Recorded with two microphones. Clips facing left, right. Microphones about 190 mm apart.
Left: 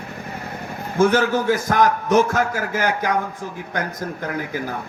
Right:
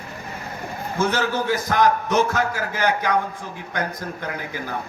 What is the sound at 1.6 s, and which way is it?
A man's voice, 45° left (ahead or behind).